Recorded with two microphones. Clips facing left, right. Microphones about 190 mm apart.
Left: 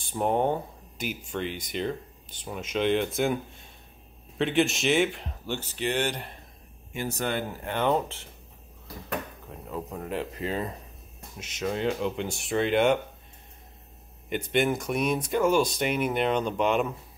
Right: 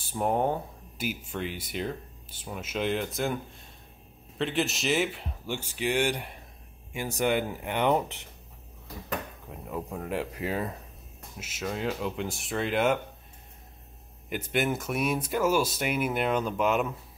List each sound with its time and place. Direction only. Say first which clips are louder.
0.1 s speech: left 2 dB; 5° right (ahead or behind)
4.4 s speech: left 4 dB; centre (ahead or behind); by 8.3 s 15° right (ahead or behind)
9.5 s speech: right 1 dB; 10° right (ahead or behind)
14.3 s speech: left 3 dB; 5° right (ahead or behind)